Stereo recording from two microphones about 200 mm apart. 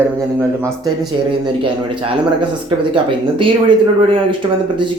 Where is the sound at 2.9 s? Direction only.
25° right (ahead or behind).